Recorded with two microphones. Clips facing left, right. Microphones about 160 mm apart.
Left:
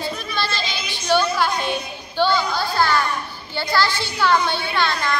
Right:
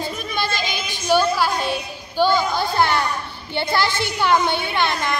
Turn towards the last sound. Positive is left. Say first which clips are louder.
# even
turn(degrees=-20)  # may be behind; listen again after turning